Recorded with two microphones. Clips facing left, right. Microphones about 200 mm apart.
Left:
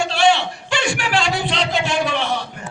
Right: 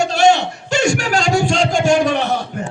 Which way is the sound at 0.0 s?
45° right (ahead or behind).